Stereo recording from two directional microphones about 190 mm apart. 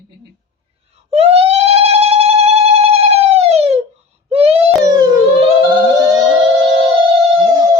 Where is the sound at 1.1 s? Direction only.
30° right (ahead or behind).